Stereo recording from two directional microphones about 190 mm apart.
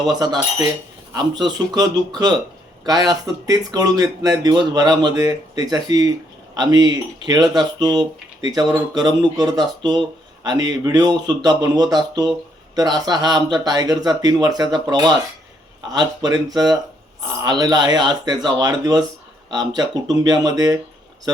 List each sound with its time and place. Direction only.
0.0 s speech: 20° right (ahead or behind)